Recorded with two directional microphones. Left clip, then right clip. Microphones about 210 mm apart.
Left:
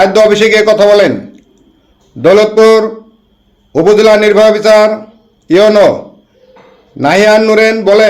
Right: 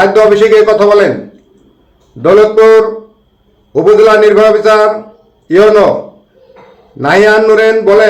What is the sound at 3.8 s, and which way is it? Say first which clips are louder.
A man's voice: right 1 dB; 40° left (ahead or behind).